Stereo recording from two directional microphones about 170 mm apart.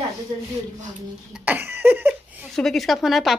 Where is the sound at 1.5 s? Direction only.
10° right (ahead or behind).